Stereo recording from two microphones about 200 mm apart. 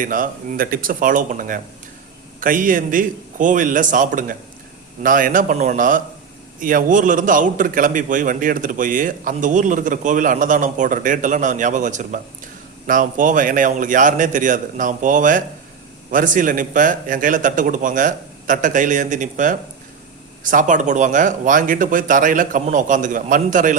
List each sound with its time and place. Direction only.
0.0 s a man's voice: 45° right (ahead or behind)